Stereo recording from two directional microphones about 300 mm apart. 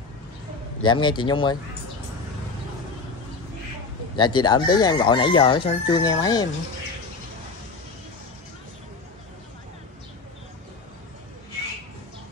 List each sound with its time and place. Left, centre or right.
0.8 s speech: centre
4.2 s speech: centre